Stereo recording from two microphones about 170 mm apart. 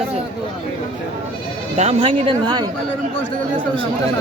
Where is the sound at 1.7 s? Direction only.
40° right (ahead or behind).